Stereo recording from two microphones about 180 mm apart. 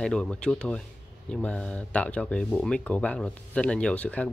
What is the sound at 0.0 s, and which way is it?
Speech, 5° left (ahead or behind).